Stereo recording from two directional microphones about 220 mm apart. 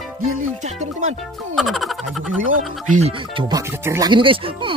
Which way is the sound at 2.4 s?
65° right (ahead or behind).